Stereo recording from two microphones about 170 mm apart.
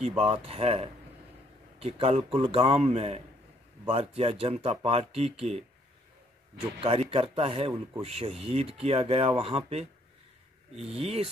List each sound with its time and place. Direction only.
0.0 s speech: 35° right (ahead or behind)
6.8 s speech: 35° right (ahead or behind)